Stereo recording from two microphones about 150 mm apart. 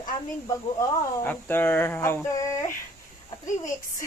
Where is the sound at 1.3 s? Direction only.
15° left (ahead or behind).